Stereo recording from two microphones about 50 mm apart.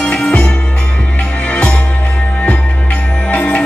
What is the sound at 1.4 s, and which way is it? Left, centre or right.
Music, left.